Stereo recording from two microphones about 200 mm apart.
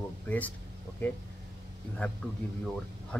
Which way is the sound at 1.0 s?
10° left (ahead or behind).